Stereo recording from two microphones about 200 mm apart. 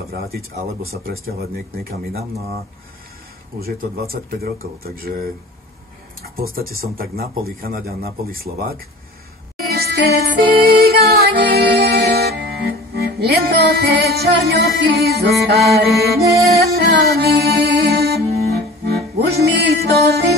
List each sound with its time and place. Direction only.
0.6 s speech: 50° right (ahead or behind)
3.6 s speech: 50° right (ahead or behind)
6.2 s speech: 45° right (ahead or behind)
9.7 s music: 50° right (ahead or behind)